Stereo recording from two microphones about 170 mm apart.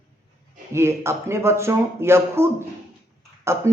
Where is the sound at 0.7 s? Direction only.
15° right (ahead or behind).